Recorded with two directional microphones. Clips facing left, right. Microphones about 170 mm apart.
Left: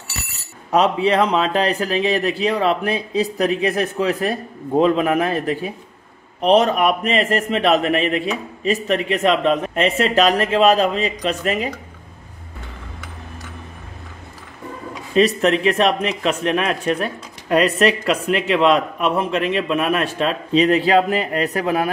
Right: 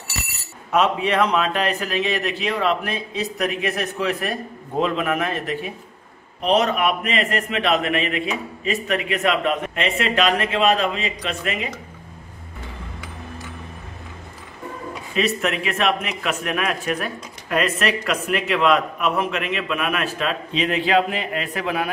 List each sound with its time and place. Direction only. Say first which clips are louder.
0.7 s a man's voice: left 3 dB; 30° left (ahead or behind)
15.1 s speech: left 7 dB; 35° left (ahead or behind)